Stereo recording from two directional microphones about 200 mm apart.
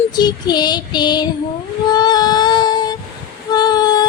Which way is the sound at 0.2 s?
20° left (ahead or behind).